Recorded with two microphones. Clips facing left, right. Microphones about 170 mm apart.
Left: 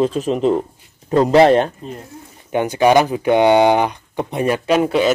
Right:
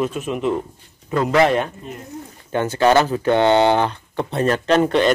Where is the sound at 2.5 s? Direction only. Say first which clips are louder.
Left 2 dB; 15° left (ahead or behind).